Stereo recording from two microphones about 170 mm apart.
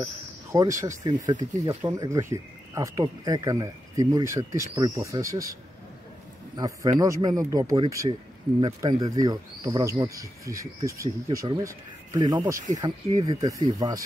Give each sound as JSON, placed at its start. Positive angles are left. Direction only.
{"t": 0.0, "sound": "speech", "side_deg": -20}